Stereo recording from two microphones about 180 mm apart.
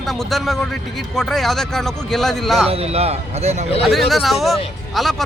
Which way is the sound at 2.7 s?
35° right (ahead or behind).